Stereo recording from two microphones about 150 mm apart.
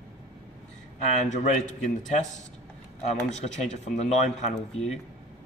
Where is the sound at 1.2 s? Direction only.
50° left (ahead or behind).